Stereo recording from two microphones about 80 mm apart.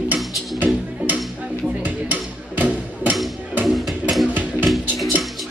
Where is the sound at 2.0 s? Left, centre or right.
Right.